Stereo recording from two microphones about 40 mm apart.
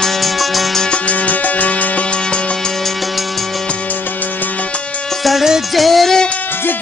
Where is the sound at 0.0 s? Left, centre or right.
Centre.